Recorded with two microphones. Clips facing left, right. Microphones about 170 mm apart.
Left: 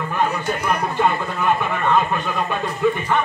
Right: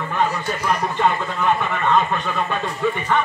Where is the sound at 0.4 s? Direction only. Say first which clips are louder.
Even; 10° left (ahead or behind).